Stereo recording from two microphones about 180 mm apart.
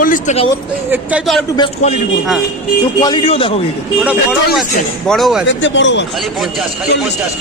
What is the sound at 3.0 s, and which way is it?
Speech, 20° left (ahead or behind).